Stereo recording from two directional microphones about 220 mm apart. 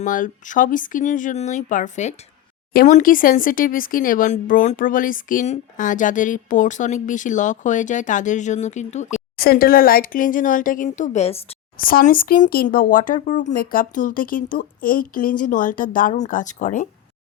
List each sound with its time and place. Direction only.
0.0 s speech: 35° left (ahead or behind)
11.8 s speech: 40° left (ahead or behind)